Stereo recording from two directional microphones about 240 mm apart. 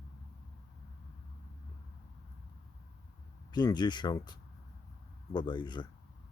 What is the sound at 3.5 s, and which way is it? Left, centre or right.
Speech, centre.